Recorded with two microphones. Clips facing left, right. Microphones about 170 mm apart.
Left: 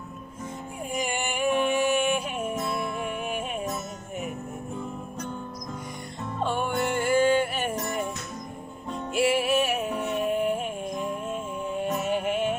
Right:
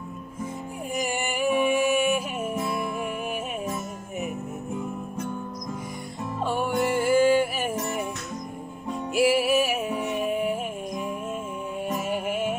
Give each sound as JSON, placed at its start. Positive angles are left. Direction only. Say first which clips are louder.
{"t": 0.9, "sound": "music", "louder": "right 1 dB", "side_deg": -5}
{"t": 6.4, "sound": "music", "louder": "right 2 dB", "side_deg": -5}
{"t": 9.1, "sound": "music", "louder": "right 2 dB", "side_deg": -5}